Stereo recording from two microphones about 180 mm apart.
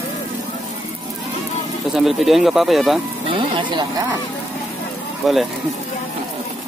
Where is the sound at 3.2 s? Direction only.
30° right (ahead or behind).